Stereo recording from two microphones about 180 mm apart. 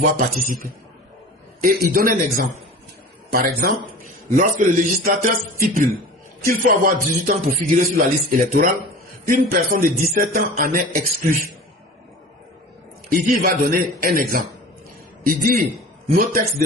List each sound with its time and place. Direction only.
0.0 s a man's voice: 50° right (ahead or behind)
1.6 s a man's voice: 55° right (ahead or behind)
4.4 s a man's voice: 50° right (ahead or behind)
13.1 s a man's voice: 50° right (ahead or behind)